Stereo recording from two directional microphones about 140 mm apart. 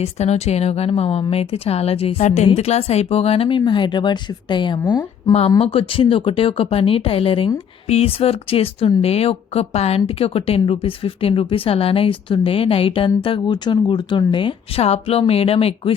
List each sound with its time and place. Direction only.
0.0 s a woman's voice: 50° left (ahead or behind)